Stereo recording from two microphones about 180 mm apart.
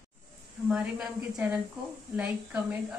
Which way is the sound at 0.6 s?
5° right (ahead or behind).